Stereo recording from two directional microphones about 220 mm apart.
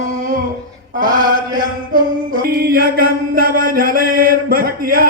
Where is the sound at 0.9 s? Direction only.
40° right (ahead or behind).